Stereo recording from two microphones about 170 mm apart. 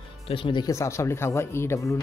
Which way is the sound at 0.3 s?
30° left (ahead or behind).